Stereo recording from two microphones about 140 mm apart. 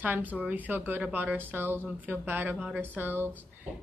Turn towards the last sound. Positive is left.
turn(degrees=-15)  # may be behind; listen again after turning